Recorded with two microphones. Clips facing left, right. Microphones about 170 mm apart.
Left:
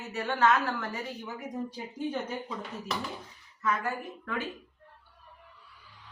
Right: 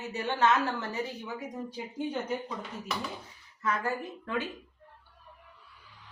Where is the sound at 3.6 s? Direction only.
30° right (ahead or behind).